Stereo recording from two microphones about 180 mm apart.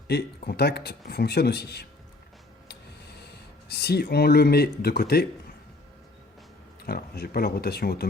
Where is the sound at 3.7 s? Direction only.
60° left (ahead or behind).